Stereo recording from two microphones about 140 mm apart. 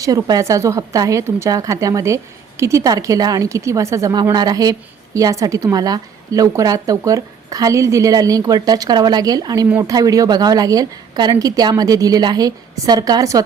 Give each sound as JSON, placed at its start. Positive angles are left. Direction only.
{"t": 0.0, "sound": "a woman's voice", "side_deg": -25}